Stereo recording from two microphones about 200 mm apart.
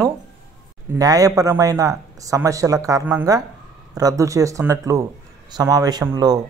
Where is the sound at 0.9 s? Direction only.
15° right (ahead or behind).